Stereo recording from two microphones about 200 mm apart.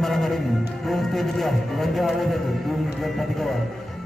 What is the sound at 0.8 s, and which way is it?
A man's voice, centre (ahead or behind).